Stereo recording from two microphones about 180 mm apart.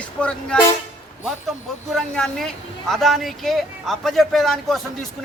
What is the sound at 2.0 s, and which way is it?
A man's voice, 5° left (ahead or behind).